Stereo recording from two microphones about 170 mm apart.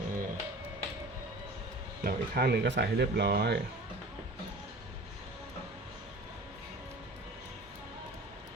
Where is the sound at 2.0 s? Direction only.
65° right (ahead or behind).